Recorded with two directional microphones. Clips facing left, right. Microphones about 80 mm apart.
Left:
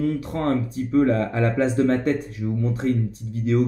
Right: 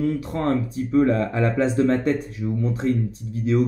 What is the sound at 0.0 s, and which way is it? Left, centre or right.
Speech, centre.